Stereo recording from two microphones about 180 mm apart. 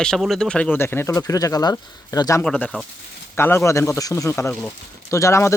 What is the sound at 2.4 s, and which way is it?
Speech, 5° left (ahead or behind).